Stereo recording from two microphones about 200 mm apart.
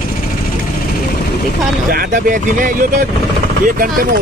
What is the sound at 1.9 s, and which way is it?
Speech, 45° right (ahead or behind).